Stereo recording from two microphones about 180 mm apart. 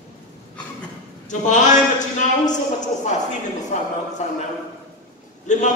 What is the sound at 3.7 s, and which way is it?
Speech, 45° left (ahead or behind).